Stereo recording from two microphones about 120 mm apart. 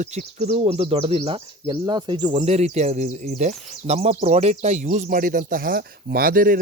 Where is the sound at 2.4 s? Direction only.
65° right (ahead or behind); by 5.4 s 90° right.